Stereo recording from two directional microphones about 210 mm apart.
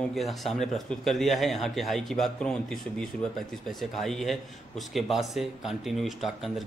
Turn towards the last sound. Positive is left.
turn(degrees=0)  # may be behind; listen again after turning